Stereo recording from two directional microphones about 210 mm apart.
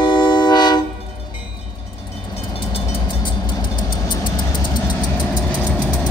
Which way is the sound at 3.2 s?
20° left (ahead or behind).